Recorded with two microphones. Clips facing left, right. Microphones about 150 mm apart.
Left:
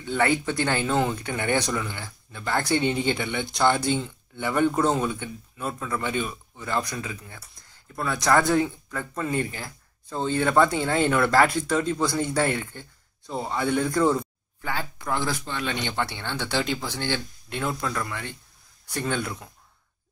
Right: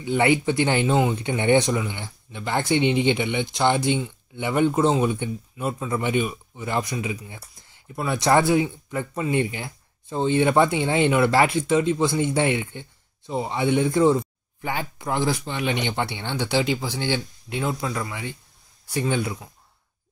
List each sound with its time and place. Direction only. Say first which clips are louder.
0.0 s speech: right 4 dB; 15° right (ahead or behind)
4.8 s speech: right 3 dB; 5° right (ahead or behind)
5.8 s speech: right 4 dB; 20° right (ahead or behind)